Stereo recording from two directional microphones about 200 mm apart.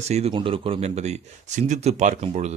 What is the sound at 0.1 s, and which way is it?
Speech, 30° right (ahead or behind).